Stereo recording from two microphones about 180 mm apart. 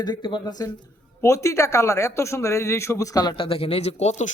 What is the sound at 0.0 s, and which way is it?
A man's voice, 25° left (ahead or behind).